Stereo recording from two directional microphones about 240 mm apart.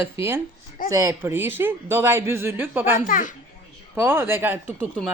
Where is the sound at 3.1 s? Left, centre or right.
Left.